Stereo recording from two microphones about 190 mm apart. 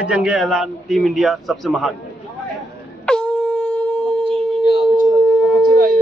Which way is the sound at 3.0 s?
5° left (ahead or behind).